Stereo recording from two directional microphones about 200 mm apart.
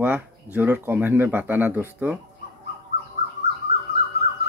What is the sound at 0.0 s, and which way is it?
A man's voice, 10° right (ahead or behind).